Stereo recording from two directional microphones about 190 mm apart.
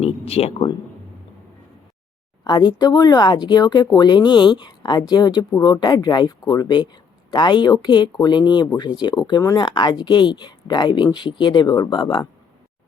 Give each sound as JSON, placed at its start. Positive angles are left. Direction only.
{"t": 0.0, "sound": "speech", "side_deg": 30}
{"t": 2.4, "sound": "speech", "side_deg": 20}